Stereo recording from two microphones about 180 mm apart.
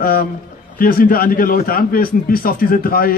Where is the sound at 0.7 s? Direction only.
55° left (ahead or behind).